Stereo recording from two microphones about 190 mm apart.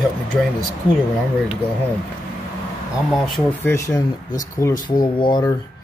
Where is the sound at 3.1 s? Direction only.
Centre (ahead or behind).